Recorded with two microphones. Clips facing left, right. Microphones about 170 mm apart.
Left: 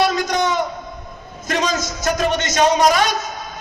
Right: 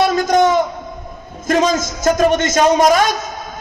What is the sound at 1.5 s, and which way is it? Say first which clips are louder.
A man's voice: right 6 dB; 50° right (ahead or behind).